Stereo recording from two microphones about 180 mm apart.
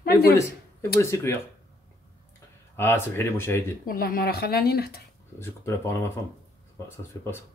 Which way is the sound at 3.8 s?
55° left (ahead or behind).